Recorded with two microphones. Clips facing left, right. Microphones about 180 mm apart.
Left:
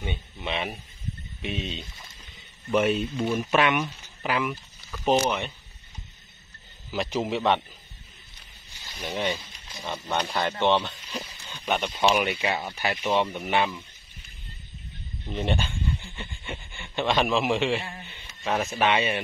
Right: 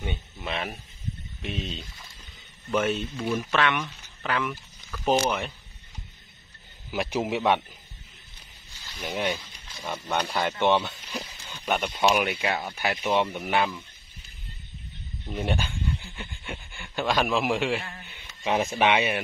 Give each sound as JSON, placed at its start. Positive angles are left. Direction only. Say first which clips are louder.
{"t": 0.0, "sound": "speech", "louder": "left 1 dB", "side_deg": 0}
{"t": 6.9, "sound": "speech", "louder": "even", "side_deg": -10}
{"t": 9.0, "sound": "speech", "louder": "even", "side_deg": -10}
{"t": 10.1, "sound": "speech", "louder": "even", "side_deg": 0}
{"t": 10.6, "sound": "a sound", "louder": "even", "side_deg": -10}
{"t": 12.0, "sound": "speech", "louder": "even", "side_deg": -5}
{"t": 15.2, "sound": "speech", "louder": "left 1 dB", "side_deg": -5}
{"t": 18.4, "sound": "speech", "louder": "right 1 dB", "side_deg": -15}